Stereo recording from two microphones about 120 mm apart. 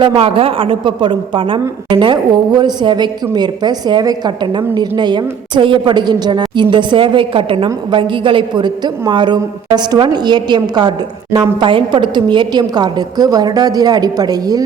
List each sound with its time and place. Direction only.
0.0 s a woman's voice: 50° right (ahead or behind); by 14.6 s 30° right (ahead or behind)